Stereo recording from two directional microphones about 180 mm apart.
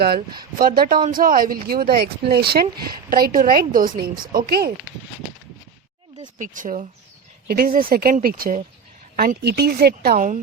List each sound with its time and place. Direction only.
0.0 s a woman's voice: 60° right (ahead or behind)
6.2 s speech: 45° right (ahead or behind)
7.4 s a woman's voice: 55° right (ahead or behind)